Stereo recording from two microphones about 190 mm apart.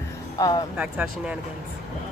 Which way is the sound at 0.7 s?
5° right (ahead or behind).